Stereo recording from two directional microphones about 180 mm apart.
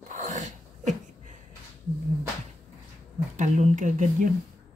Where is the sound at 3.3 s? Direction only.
45° right (ahead or behind).